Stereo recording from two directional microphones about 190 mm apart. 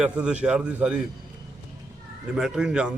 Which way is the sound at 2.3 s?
5° right (ahead or behind).